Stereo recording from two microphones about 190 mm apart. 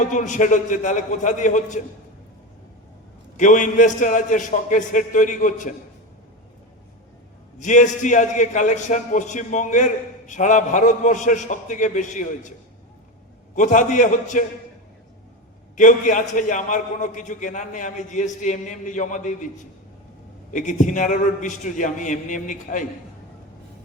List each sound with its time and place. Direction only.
0.0 s a man's voice: 40° left (ahead or behind)
3.3 s a man's voice: 40° left (ahead or behind)
7.6 s a man's voice: 40° left (ahead or behind)
13.6 s a man's voice: 40° left (ahead or behind)
15.7 s a man's voice: 40° left (ahead or behind)
20.5 s a man's voice: 40° left (ahead or behind)